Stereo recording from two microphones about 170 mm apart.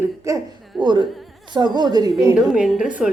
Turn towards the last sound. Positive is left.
turn(degrees=-5)  # may be behind; listen again after turning